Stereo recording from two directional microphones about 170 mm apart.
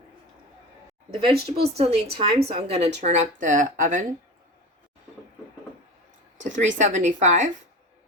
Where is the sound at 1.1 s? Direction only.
35° right (ahead or behind); by 4.0 s 50° right (ahead or behind).